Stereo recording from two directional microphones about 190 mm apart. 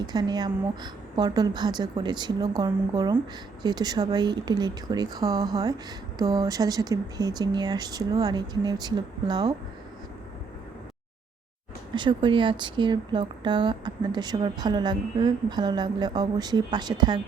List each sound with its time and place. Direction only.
0.0 s speech: 20° right (ahead or behind)
11.9 s speech: 25° right (ahead or behind)